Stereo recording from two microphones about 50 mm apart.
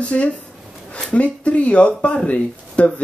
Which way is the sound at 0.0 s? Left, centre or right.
Left.